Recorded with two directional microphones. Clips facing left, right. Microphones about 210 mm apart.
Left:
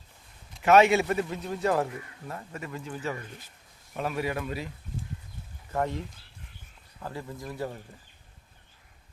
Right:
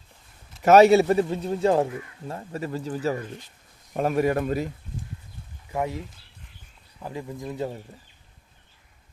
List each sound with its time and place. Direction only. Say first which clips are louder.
0.6 s speech: right 6 dB; 40° right (ahead or behind)
5.7 s speech: right 1 dB; 10° right (ahead or behind)
7.0 s speech: right 4 dB; 15° right (ahead or behind)